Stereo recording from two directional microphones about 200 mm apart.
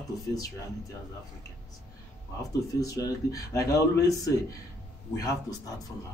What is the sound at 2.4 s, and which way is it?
A man's voice, 15° left (ahead or behind).